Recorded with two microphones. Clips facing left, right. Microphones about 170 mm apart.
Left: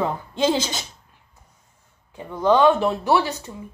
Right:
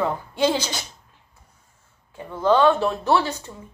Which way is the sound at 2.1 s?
15° left (ahead or behind).